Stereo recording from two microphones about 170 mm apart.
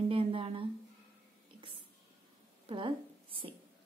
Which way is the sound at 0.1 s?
30° right (ahead or behind).